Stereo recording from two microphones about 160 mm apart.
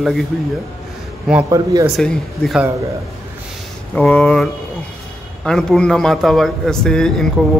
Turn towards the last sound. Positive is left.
turn(degrees=5)  # may be behind; listen again after turning